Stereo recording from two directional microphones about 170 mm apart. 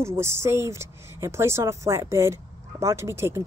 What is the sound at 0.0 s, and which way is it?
Speech, 15° right (ahead or behind).